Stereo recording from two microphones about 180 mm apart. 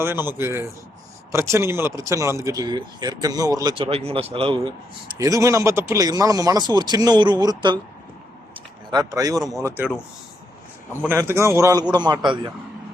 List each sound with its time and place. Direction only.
0.0 s a man's voice: 10° right (ahead or behind); by 4.6 s 30° right (ahead or behind)
5.1 s speech: 20° right (ahead or behind)
8.9 s speech: 20° right (ahead or behind)
11.1 s speech: 15° right (ahead or behind)